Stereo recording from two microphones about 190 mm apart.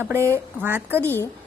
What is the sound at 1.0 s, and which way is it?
Speech, 10° left (ahead or behind).